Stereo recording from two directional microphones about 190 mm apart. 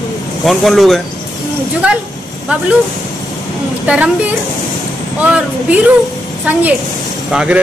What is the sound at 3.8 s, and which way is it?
Speech, 5° right (ahead or behind).